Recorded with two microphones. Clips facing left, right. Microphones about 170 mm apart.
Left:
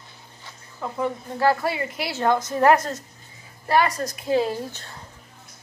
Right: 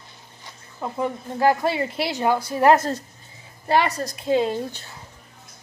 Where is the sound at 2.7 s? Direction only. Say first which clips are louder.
Right 2 dB; 30° right (ahead or behind).